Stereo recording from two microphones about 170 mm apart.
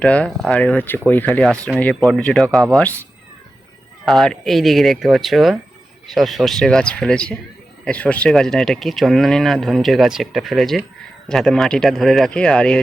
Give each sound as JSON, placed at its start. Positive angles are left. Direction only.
{"t": 0.0, "sound": "speech", "side_deg": 5}
{"t": 4.0, "sound": "speech", "side_deg": 0}